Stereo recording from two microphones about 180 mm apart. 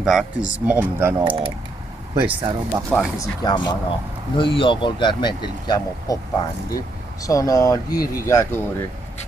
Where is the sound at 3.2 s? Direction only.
20° left (ahead or behind).